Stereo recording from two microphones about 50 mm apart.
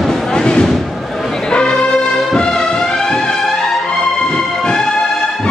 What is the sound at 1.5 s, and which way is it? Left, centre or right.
Music, centre.